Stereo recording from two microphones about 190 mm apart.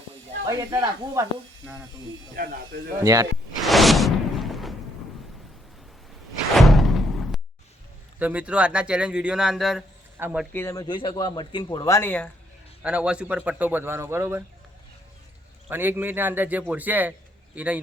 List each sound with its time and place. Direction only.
0.4 s a man's voice: 20° right (ahead or behind)
2.3 s speech: 50° right (ahead or behind)
3.0 s speech: 20° right (ahead or behind)
3.6 s whoosh: centre (ahead or behind)
6.6 s door: centre (ahead or behind)
8.2 s speech: 5° right (ahead or behind)
10.5 s speech: 15° left (ahead or behind)
12.8 s a man's voice: 5° right (ahead or behind)
15.7 s a man's voice: 10° right (ahead or behind)